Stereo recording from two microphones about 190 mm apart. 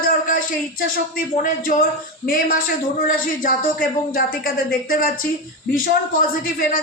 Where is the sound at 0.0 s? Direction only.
45° left (ahead or behind).